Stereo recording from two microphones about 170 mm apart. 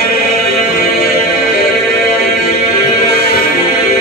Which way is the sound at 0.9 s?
65° left (ahead or behind).